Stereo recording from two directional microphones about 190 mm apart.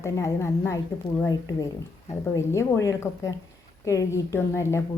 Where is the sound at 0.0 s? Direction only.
15° left (ahead or behind).